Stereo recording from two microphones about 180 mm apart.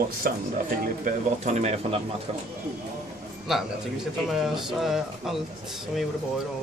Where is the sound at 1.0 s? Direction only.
40° right (ahead or behind).